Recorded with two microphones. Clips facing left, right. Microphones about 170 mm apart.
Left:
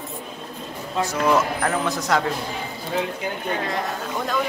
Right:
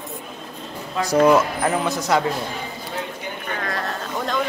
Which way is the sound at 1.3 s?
10° right (ahead or behind).